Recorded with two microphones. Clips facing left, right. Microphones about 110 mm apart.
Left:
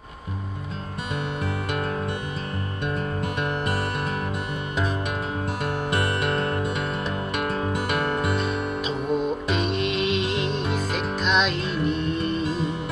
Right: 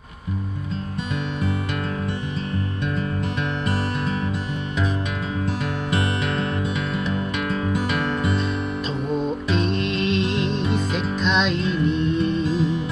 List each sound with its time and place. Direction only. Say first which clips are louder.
5.9 s music: right 1 dB; 50° left (ahead or behind)
9.1 s music: right 1 dB; 10° left (ahead or behind)